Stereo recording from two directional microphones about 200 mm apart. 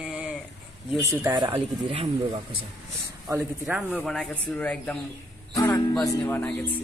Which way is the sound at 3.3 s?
15° right (ahead or behind).